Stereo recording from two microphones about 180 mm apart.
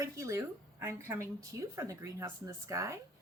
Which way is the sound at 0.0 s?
15° right (ahead or behind).